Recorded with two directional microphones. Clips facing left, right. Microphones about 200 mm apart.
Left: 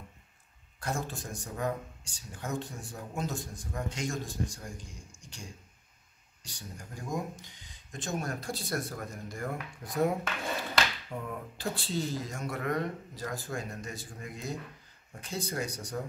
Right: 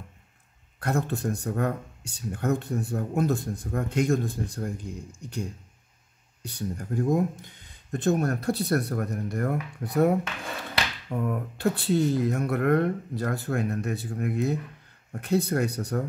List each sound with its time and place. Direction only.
0.7 s speech: 60° right (ahead or behind)